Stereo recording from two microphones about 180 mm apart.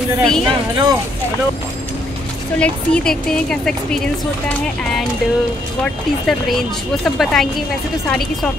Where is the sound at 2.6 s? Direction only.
5° left (ahead or behind).